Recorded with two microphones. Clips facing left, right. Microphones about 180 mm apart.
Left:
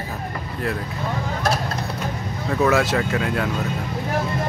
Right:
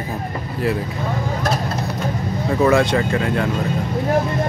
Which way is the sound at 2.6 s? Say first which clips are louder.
Right 3 dB; 5° left (ahead or behind).